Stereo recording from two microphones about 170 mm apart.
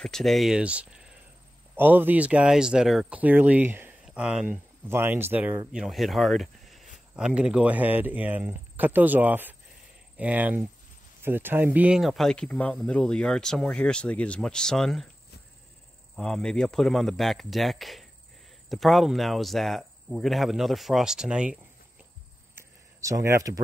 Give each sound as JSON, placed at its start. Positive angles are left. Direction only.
{"t": 0.0, "sound": "speech", "side_deg": 0}
{"t": 16.2, "sound": "speech", "side_deg": 5}
{"t": 22.6, "sound": "a sound", "side_deg": -20}